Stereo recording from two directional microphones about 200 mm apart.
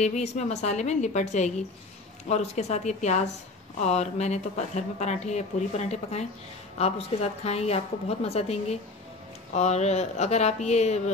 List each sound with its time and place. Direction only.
0.0 s speech: 35° left (ahead or behind)